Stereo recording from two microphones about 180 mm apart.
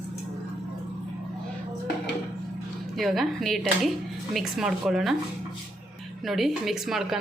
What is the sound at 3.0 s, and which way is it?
A woman's voice, centre (ahead or behind).